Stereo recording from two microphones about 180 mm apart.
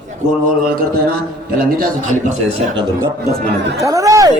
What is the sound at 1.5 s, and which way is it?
Speech, 55° right (ahead or behind).